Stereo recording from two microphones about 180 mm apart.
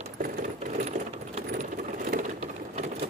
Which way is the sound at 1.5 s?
50° right (ahead or behind).